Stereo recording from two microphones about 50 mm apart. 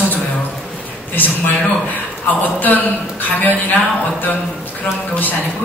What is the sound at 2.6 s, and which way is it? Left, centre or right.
Speech, left.